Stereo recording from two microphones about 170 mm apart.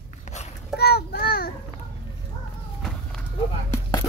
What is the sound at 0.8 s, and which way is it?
Child singing, 70° left (ahead or behind).